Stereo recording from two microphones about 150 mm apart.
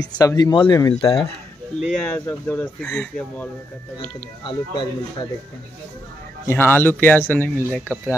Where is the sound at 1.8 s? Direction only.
5° left (ahead or behind).